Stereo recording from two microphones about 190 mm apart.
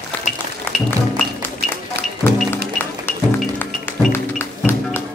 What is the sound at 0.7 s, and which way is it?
Music, 10° left (ahead or behind).